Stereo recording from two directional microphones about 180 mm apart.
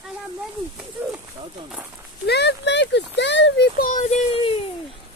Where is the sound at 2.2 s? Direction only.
70° left (ahead or behind).